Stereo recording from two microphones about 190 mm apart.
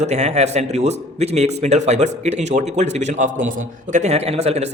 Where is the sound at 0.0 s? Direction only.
35° right (ahead or behind).